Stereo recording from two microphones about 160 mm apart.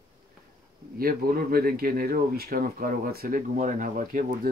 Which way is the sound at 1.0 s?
65° right (ahead or behind).